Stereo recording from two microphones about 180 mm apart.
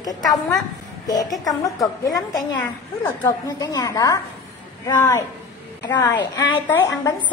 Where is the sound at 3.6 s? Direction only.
20° left (ahead or behind).